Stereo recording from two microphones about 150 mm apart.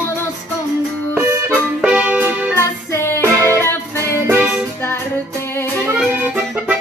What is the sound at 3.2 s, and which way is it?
Music, 15° right (ahead or behind).